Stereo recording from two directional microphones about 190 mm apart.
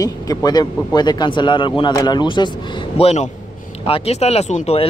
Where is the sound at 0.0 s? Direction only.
20° left (ahead or behind).